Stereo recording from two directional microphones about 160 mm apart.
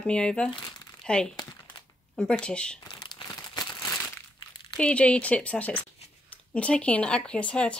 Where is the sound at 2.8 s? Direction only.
25° left (ahead or behind).